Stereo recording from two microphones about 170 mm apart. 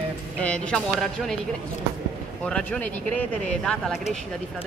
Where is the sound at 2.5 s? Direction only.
5° left (ahead or behind).